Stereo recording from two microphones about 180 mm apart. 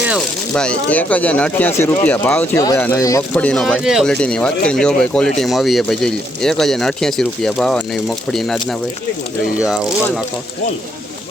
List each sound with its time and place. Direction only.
0.5 s speech: 5° left (ahead or behind)
3.3 s speech: 5° left (ahead or behind)